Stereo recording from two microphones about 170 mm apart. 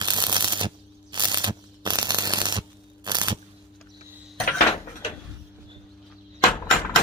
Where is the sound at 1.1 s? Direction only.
25° right (ahead or behind).